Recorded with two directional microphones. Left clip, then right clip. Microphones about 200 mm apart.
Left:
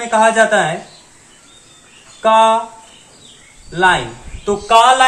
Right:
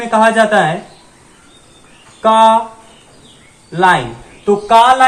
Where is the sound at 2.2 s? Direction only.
15° left (ahead or behind).